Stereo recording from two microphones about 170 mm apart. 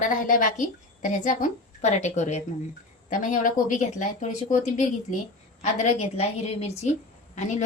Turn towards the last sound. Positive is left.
turn(degrees=45)  # may be behind; listen again after turning